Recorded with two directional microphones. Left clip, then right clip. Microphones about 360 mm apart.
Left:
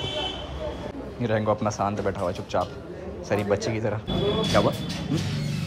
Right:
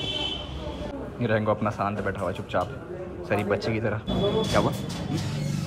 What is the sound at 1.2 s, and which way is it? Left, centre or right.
Speech, centre.